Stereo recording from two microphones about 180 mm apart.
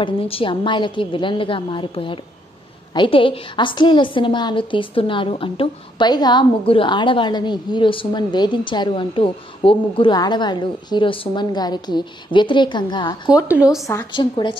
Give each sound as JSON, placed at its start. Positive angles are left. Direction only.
{"t": 0.0, "sound": "a woman's voice", "side_deg": 30}
{"t": 13.5, "sound": "speech", "side_deg": -5}
{"t": 13.8, "sound": "a woman's voice", "side_deg": 20}
{"t": 14.3, "sound": "a woman's voice", "side_deg": 30}